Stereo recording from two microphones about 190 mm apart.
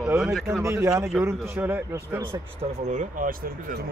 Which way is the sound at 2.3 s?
35° right (ahead or behind).